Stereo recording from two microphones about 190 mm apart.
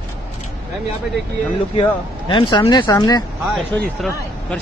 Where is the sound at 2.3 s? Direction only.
25° left (ahead or behind).